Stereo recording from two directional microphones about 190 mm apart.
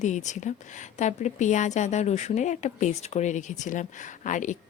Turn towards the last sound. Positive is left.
turn(degrees=40)  # may be behind; listen again after turning